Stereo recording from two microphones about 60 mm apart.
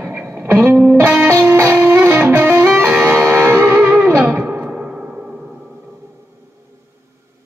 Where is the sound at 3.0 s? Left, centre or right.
Right.